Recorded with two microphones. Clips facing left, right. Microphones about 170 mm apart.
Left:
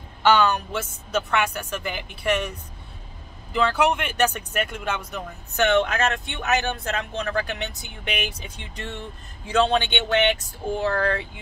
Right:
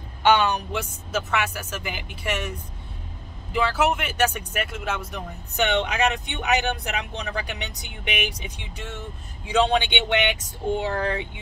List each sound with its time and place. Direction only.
0.2 s speech: 15° right (ahead or behind)
3.5 s speech: 5° right (ahead or behind)
5.6 s speech: 15° right (ahead or behind)